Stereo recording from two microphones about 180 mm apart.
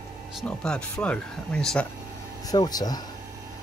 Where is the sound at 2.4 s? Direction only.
20° left (ahead or behind).